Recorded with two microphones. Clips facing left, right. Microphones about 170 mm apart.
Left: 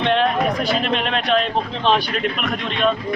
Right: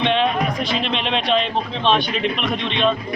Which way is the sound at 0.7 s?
25° right (ahead or behind).